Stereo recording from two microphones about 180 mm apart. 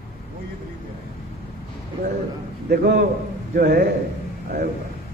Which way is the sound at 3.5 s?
55° right (ahead or behind).